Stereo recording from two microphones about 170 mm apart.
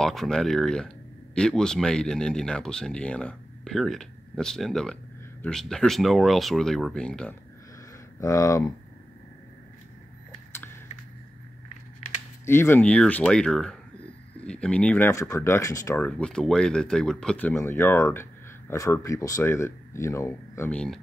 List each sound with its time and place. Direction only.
0.0 s speech: 5° left (ahead or behind)
8.2 s speech: 20° left (ahead or behind)
10.5 s a sound: 15° left (ahead or behind)
12.4 s speech: 15° left (ahead or behind)